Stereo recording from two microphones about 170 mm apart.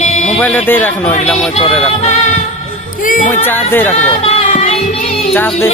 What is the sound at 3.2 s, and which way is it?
Speech, 10° left (ahead or behind).